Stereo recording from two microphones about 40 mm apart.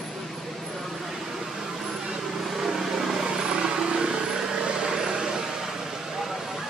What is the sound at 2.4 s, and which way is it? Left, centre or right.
Vehicle, centre.